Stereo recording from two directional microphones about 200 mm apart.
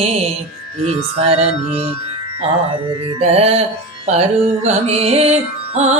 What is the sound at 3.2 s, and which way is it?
Music, 30° right (ahead or behind).